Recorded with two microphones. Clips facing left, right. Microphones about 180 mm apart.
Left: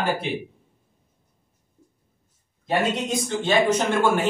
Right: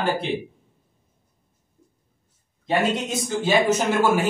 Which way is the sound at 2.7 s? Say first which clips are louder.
Right 1 dB; 5° right (ahead or behind).